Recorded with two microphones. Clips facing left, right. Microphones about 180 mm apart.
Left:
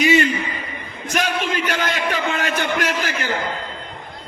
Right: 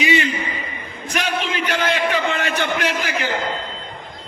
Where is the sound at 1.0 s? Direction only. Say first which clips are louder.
Left 1 dB; 40° left (ahead or behind).